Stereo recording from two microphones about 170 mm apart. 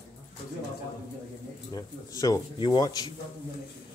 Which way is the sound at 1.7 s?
20° left (ahead or behind).